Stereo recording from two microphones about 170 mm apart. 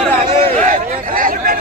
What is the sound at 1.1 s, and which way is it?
Chatter, 55° right (ahead or behind).